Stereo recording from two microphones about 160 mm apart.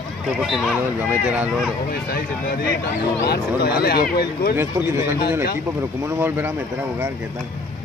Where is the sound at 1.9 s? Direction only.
70° left (ahead or behind).